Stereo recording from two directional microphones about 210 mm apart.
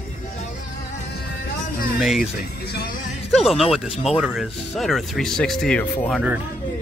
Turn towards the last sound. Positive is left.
turn(degrees=5)  # may be behind; listen again after turning